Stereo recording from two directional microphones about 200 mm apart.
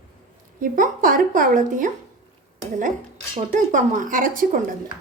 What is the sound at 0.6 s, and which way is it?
A woman's voice, 45° right (ahead or behind).